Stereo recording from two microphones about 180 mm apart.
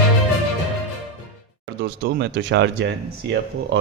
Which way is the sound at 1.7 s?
65° right (ahead or behind).